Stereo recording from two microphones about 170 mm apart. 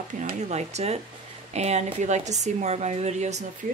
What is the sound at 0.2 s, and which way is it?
A woman's voice, 45° right (ahead or behind).